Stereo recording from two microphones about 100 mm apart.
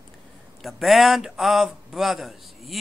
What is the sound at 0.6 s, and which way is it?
A man's voice, centre (ahead or behind).